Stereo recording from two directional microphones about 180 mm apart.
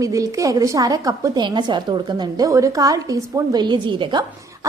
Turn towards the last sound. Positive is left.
turn(degrees=-25)  # may be behind; listen again after turning